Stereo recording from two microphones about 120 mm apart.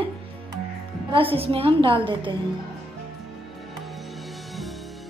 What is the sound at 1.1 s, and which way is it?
A woman's voice, 50° right (ahead or behind).